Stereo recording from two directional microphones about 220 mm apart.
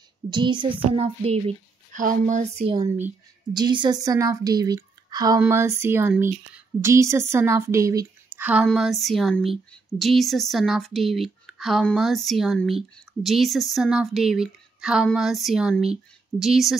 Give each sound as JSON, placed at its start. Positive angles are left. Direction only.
{"t": 0.3, "sound": "child singing", "side_deg": -20}
{"t": 2.0, "sound": "a woman's voice", "side_deg": -35}